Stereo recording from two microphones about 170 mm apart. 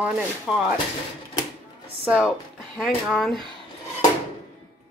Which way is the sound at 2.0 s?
5° right (ahead or behind).